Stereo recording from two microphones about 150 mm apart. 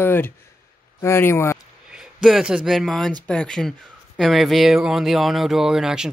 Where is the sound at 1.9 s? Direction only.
5° right (ahead or behind).